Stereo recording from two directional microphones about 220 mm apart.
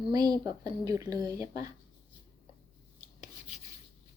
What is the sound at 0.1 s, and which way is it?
Speech, 15° right (ahead or behind).